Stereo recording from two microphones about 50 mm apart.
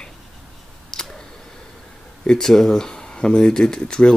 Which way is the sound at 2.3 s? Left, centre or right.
Centre.